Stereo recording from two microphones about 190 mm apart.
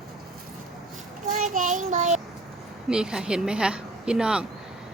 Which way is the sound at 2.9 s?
5° right (ahead or behind).